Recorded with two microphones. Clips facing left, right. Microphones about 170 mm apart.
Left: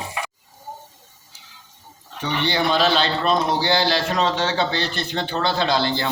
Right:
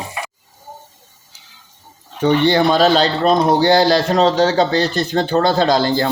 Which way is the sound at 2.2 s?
50° right (ahead or behind).